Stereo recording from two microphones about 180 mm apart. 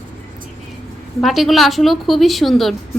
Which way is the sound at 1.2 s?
Centre (ahead or behind).